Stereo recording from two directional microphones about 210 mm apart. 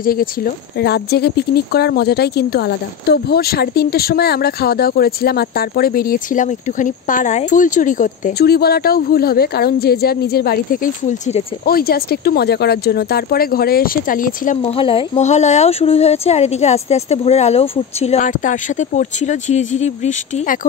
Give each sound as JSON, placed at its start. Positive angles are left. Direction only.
{"t": 0.0, "sound": "speech", "side_deg": 45}
{"t": 11.6, "sound": "speech", "side_deg": 45}